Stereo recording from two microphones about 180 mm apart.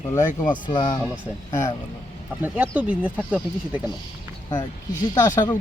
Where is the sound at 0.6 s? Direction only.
25° left (ahead or behind).